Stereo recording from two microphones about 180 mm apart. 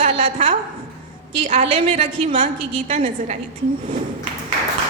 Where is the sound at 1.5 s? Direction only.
35° right (ahead or behind).